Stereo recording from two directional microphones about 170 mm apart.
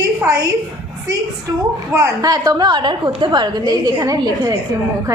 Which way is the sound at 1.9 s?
15° right (ahead or behind).